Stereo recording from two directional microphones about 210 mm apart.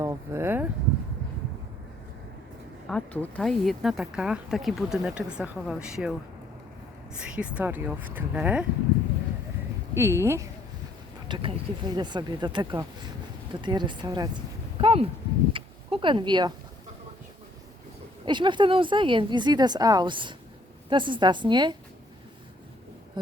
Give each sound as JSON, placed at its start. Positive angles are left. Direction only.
{"t": 0.0, "sound": "speech", "side_deg": -15}
{"t": 2.9, "sound": "speech", "side_deg": 5}
{"t": 9.9, "sound": "speech", "side_deg": -10}
{"t": 15.5, "sound": "a sound", "side_deg": -25}
{"t": 18.3, "sound": "speech", "side_deg": -20}